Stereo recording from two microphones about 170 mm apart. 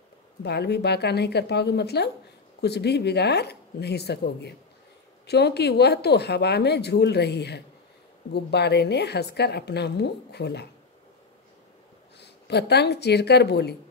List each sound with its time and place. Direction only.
0.4 s a woman's voice: 75° left (ahead or behind)
12.2 s speech: 80° left